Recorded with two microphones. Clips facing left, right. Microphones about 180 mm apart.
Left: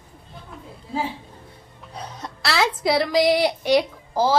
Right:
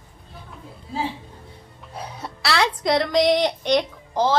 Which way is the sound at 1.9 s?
10° right (ahead or behind).